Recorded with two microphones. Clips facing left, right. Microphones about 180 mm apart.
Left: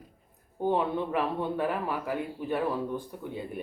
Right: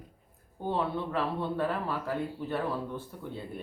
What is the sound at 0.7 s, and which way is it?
Speech, 15° left (ahead or behind).